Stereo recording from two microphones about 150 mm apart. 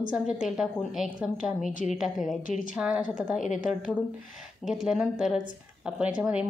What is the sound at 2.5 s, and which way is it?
Speech, 60° left (ahead or behind).